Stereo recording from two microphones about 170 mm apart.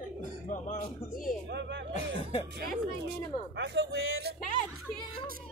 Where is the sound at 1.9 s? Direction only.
35° left (ahead or behind).